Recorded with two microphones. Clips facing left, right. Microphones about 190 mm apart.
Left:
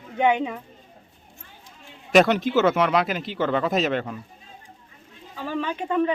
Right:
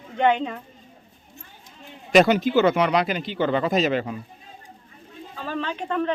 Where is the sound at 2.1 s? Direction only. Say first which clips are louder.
Right 1 dB; centre (ahead or behind).